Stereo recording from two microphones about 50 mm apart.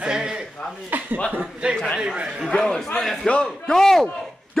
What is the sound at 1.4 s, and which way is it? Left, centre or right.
Speech, centre.